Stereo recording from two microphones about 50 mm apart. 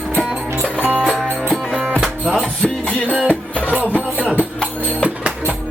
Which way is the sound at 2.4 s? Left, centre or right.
Centre.